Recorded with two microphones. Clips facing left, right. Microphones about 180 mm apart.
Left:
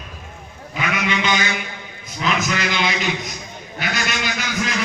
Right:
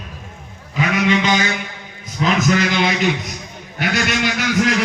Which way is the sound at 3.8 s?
60° right (ahead or behind).